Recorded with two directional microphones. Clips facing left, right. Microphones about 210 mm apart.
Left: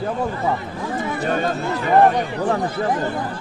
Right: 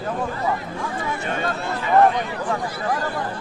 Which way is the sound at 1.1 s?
40° left (ahead or behind).